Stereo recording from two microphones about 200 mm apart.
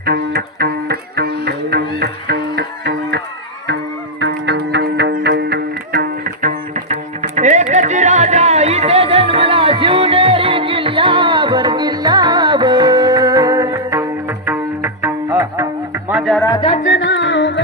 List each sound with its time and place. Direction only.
0.0 s music: 55° right (ahead or behind)
4.2 s music: 60° right (ahead or behind); by 15.6 s 15° right (ahead or behind)
16.0 s music: centre (ahead or behind)
16.4 s music: 20° left (ahead or behind)
17.0 s music: 65° left (ahead or behind)